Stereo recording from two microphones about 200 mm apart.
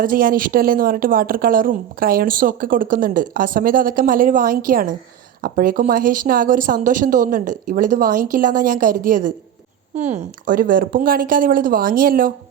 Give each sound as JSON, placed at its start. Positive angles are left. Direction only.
{"t": 0.0, "sound": "speech", "side_deg": -45}